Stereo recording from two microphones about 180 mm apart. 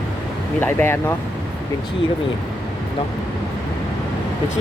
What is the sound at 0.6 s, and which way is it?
Speech, 10° left (ahead or behind).